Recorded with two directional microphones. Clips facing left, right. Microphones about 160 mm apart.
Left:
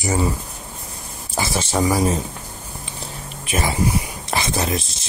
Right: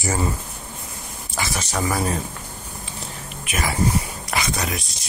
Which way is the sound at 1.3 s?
30° left (ahead or behind).